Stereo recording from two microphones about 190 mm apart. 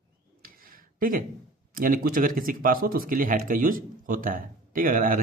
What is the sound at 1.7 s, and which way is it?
Speech, 45° right (ahead or behind).